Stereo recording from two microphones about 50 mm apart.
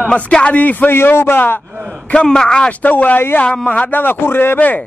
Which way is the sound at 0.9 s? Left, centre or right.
Left.